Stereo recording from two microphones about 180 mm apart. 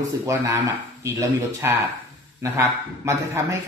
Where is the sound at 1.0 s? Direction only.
15° right (ahead or behind).